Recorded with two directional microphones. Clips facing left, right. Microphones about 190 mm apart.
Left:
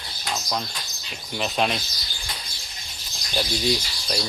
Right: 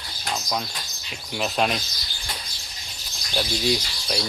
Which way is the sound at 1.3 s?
Centre (ahead or behind).